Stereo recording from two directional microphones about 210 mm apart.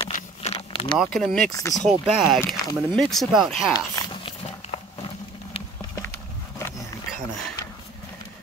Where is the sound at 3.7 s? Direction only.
20° left (ahead or behind).